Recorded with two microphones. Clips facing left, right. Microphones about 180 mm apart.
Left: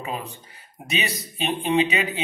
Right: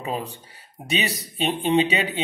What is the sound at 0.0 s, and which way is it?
Speech, 35° right (ahead or behind).